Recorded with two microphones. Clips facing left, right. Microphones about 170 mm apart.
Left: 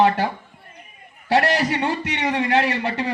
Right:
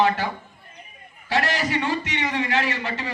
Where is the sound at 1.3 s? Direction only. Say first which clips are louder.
Left 5 dB; 65° left (ahead or behind).